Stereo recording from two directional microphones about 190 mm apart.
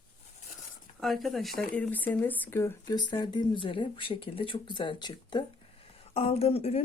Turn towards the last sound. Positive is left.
turn(degrees=30)  # may be behind; listen again after turning